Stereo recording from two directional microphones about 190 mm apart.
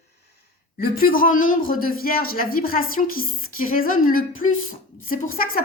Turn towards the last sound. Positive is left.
turn(degrees=50)  # may be behind; listen again after turning